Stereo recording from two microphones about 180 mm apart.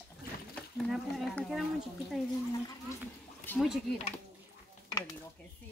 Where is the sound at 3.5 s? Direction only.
10° left (ahead or behind).